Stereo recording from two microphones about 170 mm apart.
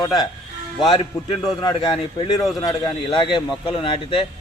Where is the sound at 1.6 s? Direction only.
25° left (ahead or behind).